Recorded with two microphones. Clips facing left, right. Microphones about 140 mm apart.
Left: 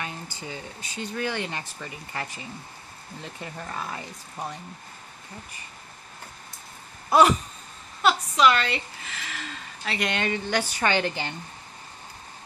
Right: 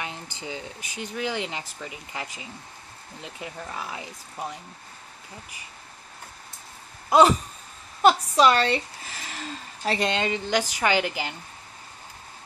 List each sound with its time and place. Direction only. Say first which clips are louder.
0.0 s speech: even; 15° right (ahead or behind)
7.1 s a sound: right 1 dB; 25° right (ahead or behind)
8.0 s a woman's voice: right 2 dB; 35° right (ahead or behind); by 11.3 s 10° right (ahead or behind)